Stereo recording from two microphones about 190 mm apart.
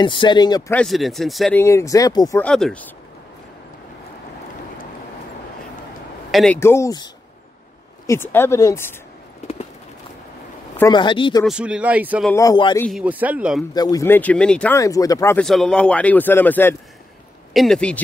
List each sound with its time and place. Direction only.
0.0 s speech: 25° left (ahead or behind)
0.7 s a man's voice: centre (ahead or behind)
1.6 s a man's voice: 15° left (ahead or behind)
2.4 s a man's voice: 5° left (ahead or behind)
6.3 s a man's voice: 5° left (ahead or behind)
6.6 s a man's voice: 15° left (ahead or behind)
8.1 s a man's voice: 10° left (ahead or behind)
10.8 s speech: 25° left (ahead or behind)
11.4 s a man's voice: 5° right (ahead or behind)
12.4 s speech: 20° left (ahead or behind)
13.0 s speech: 10° right (ahead or behind)
13.7 s a man's voice: 20° left (ahead or behind)
14.8 s a man's voice: 20° left (ahead or behind)
15.4 s a man's voice: centre (ahead or behind)